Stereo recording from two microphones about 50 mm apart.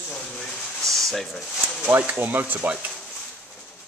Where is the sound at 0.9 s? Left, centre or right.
Centre.